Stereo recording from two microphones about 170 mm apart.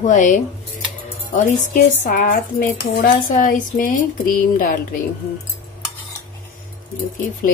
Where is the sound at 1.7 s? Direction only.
50° left (ahead or behind).